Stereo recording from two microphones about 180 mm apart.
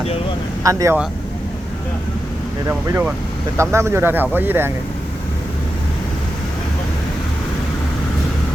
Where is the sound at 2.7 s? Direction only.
5° right (ahead or behind).